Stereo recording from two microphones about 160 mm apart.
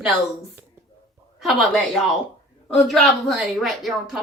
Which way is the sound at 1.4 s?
Centre (ahead or behind).